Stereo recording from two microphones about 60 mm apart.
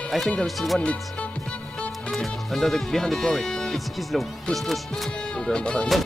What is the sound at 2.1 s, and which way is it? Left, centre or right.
Speech, centre.